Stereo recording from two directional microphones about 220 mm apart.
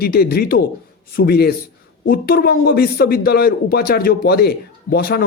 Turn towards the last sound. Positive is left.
turn(degrees=45)  # may be behind; listen again after turning